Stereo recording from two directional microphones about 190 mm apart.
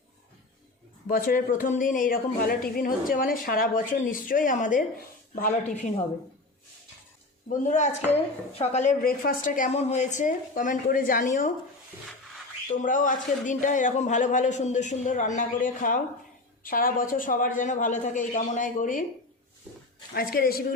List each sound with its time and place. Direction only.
1.1 s a woman's voice: 45° left (ahead or behind)
7.5 s a man's voice: 40° left (ahead or behind)
12.6 s a man's voice: 40° left (ahead or behind)
20.1 s a woman's voice: 50° left (ahead or behind)